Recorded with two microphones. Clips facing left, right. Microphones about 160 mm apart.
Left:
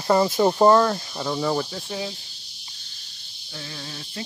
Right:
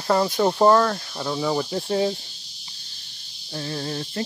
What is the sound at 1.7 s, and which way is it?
Cricket, 40° right (ahead or behind).